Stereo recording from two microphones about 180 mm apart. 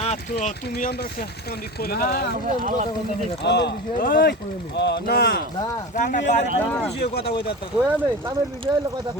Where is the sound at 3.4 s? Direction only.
70° left (ahead or behind).